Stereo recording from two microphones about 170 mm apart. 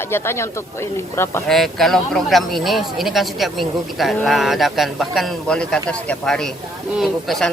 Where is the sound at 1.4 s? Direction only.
Centre (ahead or behind).